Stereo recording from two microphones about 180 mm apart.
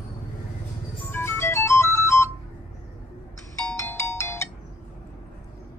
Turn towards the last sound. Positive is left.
turn(degrees=15)  # may be behind; listen again after turning